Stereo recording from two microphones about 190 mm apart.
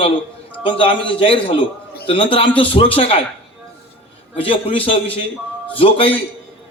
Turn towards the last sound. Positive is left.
turn(degrees=30)  # may be behind; listen again after turning